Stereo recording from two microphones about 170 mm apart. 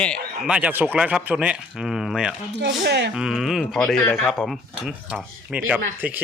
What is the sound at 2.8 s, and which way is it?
Speech, 75° right (ahead or behind).